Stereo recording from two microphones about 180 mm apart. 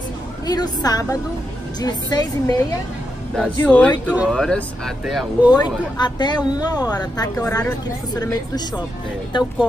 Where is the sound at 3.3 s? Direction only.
5° left (ahead or behind).